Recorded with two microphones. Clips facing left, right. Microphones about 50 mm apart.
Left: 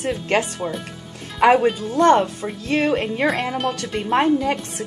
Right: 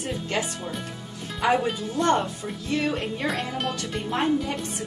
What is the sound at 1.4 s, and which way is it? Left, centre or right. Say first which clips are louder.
Speech: left 8 dB; left.